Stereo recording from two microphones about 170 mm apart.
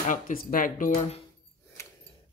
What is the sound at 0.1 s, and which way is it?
Speech, 55° left (ahead or behind).